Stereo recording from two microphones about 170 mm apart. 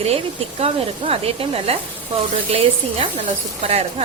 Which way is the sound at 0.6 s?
35° right (ahead or behind).